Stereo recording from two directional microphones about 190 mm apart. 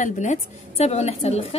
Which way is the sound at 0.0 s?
40° left (ahead or behind).